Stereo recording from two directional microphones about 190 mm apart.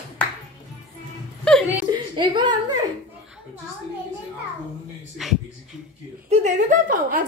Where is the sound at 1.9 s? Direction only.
25° right (ahead or behind).